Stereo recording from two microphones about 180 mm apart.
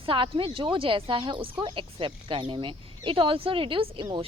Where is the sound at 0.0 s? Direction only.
30° right (ahead or behind).